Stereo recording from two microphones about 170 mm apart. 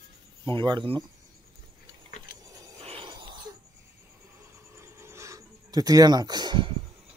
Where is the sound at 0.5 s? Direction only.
30° right (ahead or behind).